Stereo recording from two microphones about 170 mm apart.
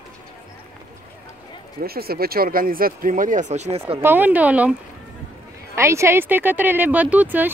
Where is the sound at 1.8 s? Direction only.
65° right (ahead or behind); by 3.8 s 40° right (ahead or behind).